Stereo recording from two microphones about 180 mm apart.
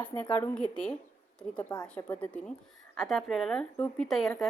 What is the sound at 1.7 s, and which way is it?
Speech, 20° left (ahead or behind).